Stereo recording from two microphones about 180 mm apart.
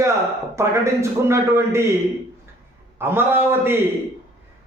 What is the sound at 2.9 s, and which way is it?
Speech, 10° right (ahead or behind).